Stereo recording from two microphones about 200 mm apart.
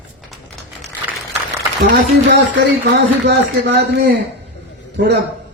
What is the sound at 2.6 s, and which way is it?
Speech, 60° right (ahead or behind).